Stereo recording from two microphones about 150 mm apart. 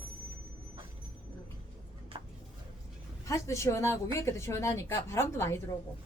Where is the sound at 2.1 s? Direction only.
35° right (ahead or behind).